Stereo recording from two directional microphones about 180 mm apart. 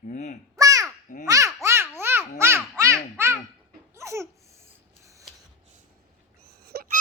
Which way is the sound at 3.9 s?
15° right (ahead or behind).